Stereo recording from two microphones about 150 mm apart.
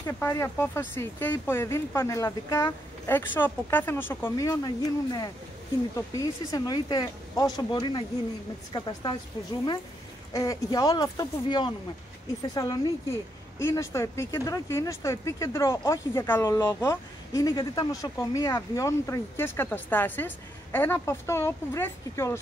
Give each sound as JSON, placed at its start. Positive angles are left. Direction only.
{"t": 0.0, "sound": "a woman's voice", "side_deg": 15}
{"t": 10.3, "sound": "speech", "side_deg": 25}